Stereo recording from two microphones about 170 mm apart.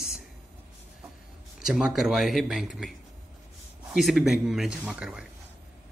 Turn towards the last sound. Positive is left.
turn(degrees=-5)  # may be behind; listen again after turning